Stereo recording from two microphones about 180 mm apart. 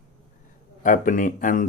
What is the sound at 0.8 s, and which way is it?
Speech, 45° left (ahead or behind).